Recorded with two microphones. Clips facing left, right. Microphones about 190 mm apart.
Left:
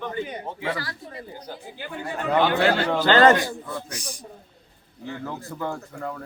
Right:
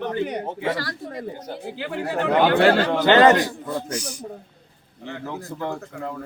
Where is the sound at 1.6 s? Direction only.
85° right; by 2.8 s 65° right (ahead or behind).